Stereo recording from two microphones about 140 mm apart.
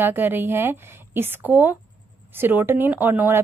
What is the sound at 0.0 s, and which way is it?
A woman's voice, 15° right (ahead or behind).